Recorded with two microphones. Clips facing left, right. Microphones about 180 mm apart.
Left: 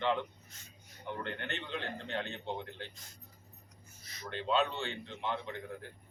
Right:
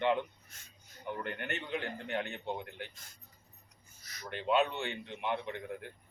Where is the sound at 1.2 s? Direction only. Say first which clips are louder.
Right 1 dB; 10° right (ahead or behind).